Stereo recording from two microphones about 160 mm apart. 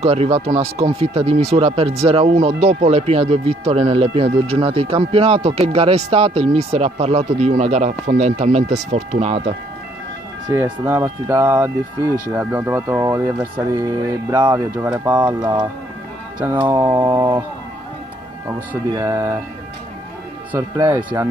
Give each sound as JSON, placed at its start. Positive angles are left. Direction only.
{"t": 0.0, "sound": "speech", "side_deg": -40}
{"t": 10.5, "sound": "speech", "side_deg": -15}
{"t": 16.3, "sound": "speech", "side_deg": -15}
{"t": 18.9, "sound": "speech", "side_deg": -15}
{"t": 20.5, "sound": "speech", "side_deg": -15}